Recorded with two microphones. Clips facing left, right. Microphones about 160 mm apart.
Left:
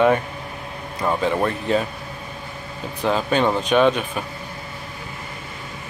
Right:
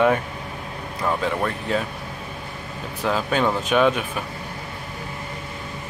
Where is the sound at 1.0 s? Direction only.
10° left (ahead or behind).